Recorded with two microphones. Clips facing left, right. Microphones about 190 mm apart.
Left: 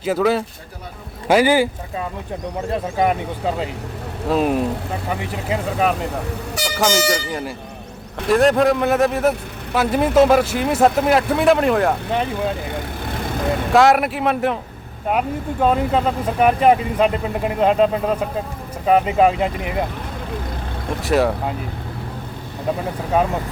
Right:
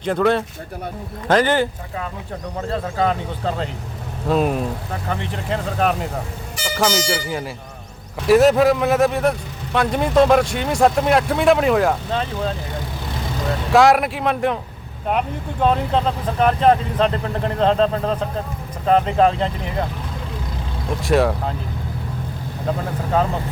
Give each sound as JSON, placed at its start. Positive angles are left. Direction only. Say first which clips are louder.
{"t": 0.0, "sound": "speech", "louder": "even", "side_deg": 5}
{"t": 2.7, "sound": "speech", "louder": "left 1 dB", "side_deg": 15}
{"t": 4.3, "sound": "speech", "louder": "left 1 dB", "side_deg": 0}
{"t": 6.6, "sound": "vehicle", "louder": "left 1 dB", "side_deg": 70}
{"t": 7.1, "sound": "speech", "louder": "left 1 dB", "side_deg": 0}
{"t": 13.7, "sound": "speech", "louder": "right 1 dB", "side_deg": 0}
{"t": 15.6, "sound": "speech", "louder": "left 1 dB", "side_deg": 5}
{"t": 21.0, "sound": "speech", "louder": "even", "side_deg": 0}
{"t": 23.1, "sound": "speech", "louder": "left 1 dB", "side_deg": 15}